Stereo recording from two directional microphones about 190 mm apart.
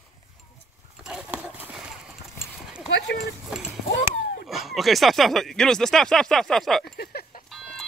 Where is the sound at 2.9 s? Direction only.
65° left (ahead or behind).